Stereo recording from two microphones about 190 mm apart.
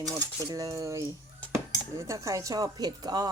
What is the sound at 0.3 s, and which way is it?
A woman's voice, 20° right (ahead or behind).